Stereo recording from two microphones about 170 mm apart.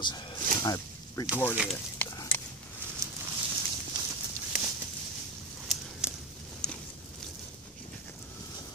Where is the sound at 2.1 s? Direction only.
15° left (ahead or behind).